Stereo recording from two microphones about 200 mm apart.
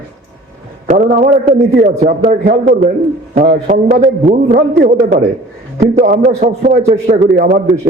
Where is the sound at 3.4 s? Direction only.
40° right (ahead or behind).